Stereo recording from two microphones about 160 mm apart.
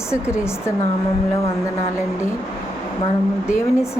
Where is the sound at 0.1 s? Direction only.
15° left (ahead or behind).